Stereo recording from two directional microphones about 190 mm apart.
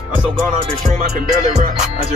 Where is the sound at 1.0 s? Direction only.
35° right (ahead or behind).